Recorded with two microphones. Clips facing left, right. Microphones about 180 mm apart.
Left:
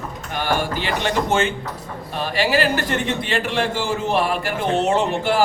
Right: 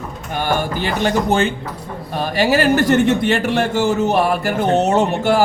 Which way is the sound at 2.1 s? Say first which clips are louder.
Right 4 dB; 45° right (ahead or behind).